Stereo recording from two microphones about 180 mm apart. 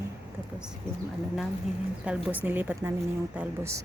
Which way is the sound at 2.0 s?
10° right (ahead or behind).